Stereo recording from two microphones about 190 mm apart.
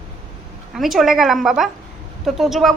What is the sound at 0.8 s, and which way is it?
A woman's voice, centre (ahead or behind).